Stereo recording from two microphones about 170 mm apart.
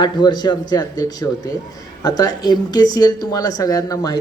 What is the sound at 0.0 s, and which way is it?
Speech, 25° left (ahead or behind).